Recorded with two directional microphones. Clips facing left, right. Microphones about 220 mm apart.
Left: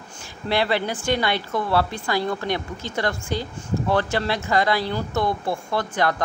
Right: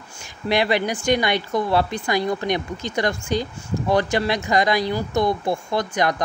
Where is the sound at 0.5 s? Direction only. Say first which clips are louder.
Right 2 dB; 15° right (ahead or behind).